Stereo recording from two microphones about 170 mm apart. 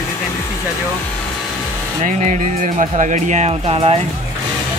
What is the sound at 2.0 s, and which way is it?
Speech, 50° right (ahead or behind).